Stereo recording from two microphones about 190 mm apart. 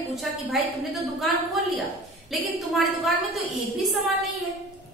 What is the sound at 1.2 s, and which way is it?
A woman's voice, centre (ahead or behind).